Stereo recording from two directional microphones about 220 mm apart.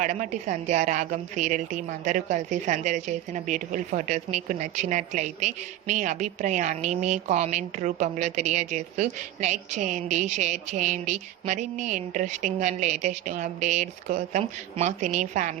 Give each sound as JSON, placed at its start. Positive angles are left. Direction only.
{"t": 0.0, "sound": "a woman's voice", "side_deg": -35}